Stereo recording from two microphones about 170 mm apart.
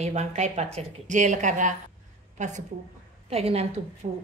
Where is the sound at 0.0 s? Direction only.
40° right (ahead or behind).